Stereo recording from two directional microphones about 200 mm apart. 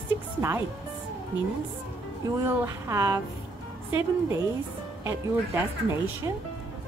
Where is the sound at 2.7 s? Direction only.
15° right (ahead or behind).